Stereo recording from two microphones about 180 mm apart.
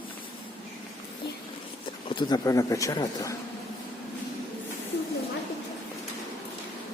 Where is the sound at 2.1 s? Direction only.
20° left (ahead or behind).